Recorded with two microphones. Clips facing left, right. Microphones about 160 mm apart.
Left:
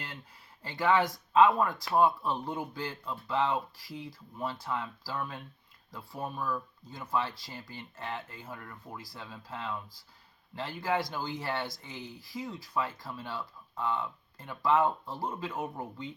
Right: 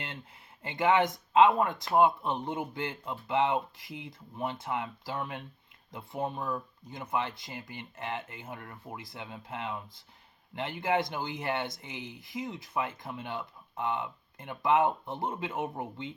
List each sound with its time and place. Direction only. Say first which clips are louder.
0.6 s speech: right 1 dB; 20° right (ahead or behind)